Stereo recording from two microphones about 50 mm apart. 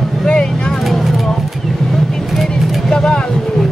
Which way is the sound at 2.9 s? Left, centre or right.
Centre.